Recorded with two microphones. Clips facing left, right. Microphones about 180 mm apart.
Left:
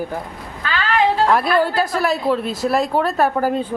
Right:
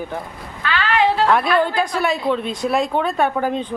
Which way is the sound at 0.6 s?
40° left (ahead or behind).